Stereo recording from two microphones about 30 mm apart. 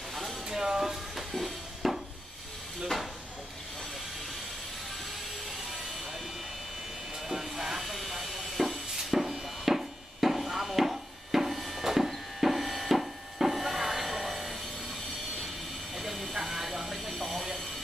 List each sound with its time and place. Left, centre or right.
0.1 s a sound: centre
0.5 s music: centre
7.4 s vehicle: centre
7.8 s a sound: centre
12.4 s music: centre
16.0 s vehicle: centre